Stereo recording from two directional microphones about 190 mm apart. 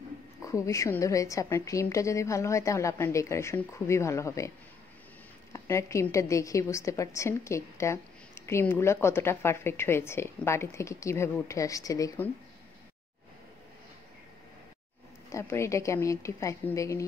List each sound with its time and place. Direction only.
0.5 s a woman's voice: 15° left (ahead or behind)
5.5 s a woman's voice: 15° left (ahead or behind)
15.3 s a woman's voice: 15° left (ahead or behind)